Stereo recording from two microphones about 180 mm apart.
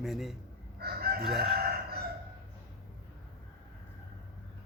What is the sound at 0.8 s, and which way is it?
Crowing, 60° right (ahead or behind).